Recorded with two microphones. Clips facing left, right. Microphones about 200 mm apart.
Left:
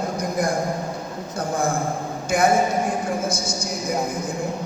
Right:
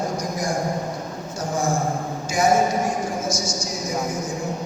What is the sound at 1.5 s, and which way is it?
Speech, 55° left (ahead or behind).